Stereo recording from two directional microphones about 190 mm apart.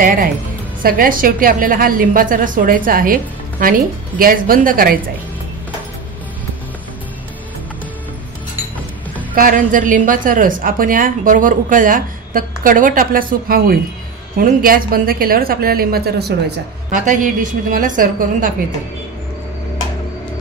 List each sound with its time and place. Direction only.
0.0 s a woman's voice: 45° right (ahead or behind)
9.3 s a woman's voice: 45° right (ahead or behind)
16.9 s a woman's voice: 40° right (ahead or behind)